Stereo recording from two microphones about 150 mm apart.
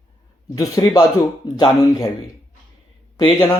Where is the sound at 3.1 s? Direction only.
35° left (ahead or behind).